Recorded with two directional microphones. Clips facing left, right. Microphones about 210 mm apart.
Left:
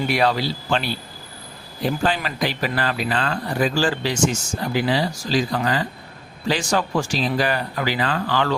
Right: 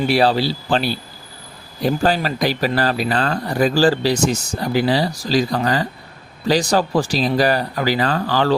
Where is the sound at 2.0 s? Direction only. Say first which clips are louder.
Right 5 dB; 40° right (ahead or behind).